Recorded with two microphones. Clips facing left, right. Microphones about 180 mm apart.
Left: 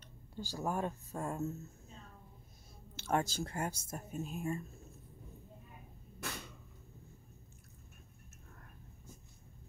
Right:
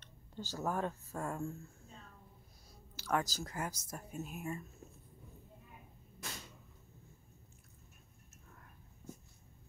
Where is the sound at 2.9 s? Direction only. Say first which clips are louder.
Left 2 dB; 25° left (ahead or behind).